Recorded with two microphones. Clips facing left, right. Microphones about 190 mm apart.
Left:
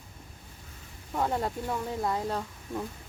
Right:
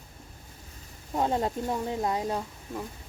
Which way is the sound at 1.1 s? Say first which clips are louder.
Right 2 dB; 20° right (ahead or behind).